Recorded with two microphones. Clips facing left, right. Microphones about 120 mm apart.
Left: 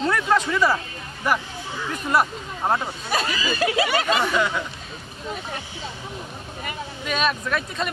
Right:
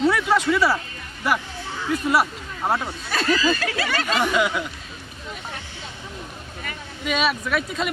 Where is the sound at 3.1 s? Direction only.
15° left (ahead or behind).